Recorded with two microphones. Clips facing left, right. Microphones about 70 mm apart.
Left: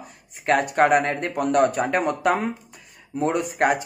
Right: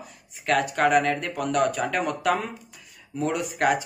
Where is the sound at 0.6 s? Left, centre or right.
Left.